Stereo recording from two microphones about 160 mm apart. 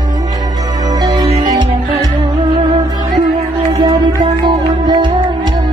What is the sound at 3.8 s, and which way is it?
Music, 30° right (ahead or behind).